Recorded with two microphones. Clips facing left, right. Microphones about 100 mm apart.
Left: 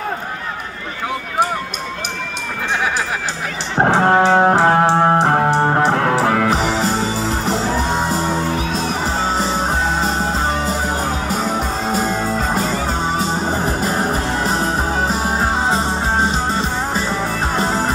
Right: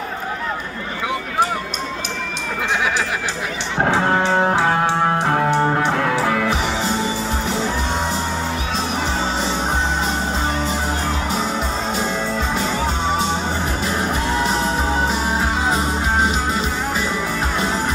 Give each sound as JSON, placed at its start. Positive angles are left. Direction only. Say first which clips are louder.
{"t": 3.7, "sound": "music", "louder": "left 5 dB", "side_deg": 35}
{"t": 6.6, "sound": "music", "louder": "left 3 dB", "side_deg": 0}
{"t": 9.3, "sound": "music", "louder": "left 3 dB", "side_deg": 40}
{"t": 11.9, "sound": "music", "louder": "left 3 dB", "side_deg": 5}
{"t": 13.2, "sound": "music", "louder": "left 2 dB", "side_deg": 40}